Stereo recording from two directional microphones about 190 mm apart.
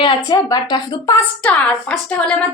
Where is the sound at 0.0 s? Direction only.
20° left (ahead or behind).